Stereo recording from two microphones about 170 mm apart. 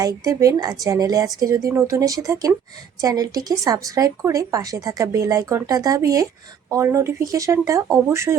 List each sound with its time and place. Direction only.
0.0 s a woman's voice: 20° right (ahead or behind)